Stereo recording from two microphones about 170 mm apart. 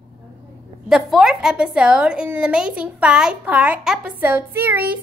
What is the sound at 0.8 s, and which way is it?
A woman's voice, 5° right (ahead or behind).